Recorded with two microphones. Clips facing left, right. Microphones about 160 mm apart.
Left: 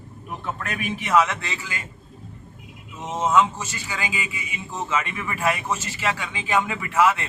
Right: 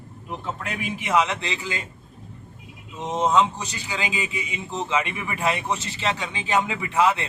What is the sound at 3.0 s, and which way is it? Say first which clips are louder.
Speech: even; 15° right (ahead or behind).